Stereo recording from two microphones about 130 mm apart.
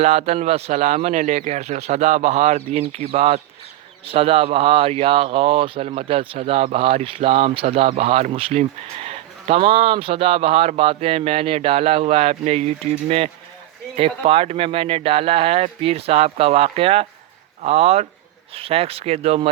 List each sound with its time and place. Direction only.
0.0 s speech: 55° right (ahead or behind)